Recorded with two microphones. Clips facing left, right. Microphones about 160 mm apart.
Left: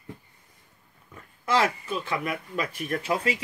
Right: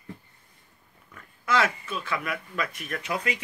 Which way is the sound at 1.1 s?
30° left (ahead or behind).